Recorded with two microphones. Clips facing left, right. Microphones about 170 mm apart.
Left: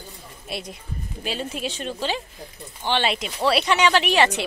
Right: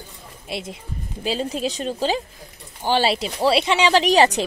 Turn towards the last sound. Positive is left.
turn(degrees=-40)  # may be behind; listen again after turning